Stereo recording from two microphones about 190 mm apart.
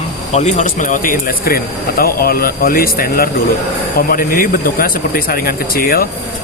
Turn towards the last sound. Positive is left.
turn(degrees=50)  # may be behind; listen again after turning